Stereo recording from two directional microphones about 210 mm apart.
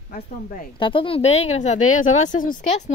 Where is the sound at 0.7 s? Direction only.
25° left (ahead or behind).